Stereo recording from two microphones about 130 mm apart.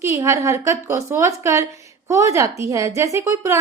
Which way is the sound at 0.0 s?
20° right (ahead or behind).